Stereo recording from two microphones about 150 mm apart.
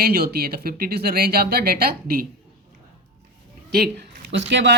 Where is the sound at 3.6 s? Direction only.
90° right.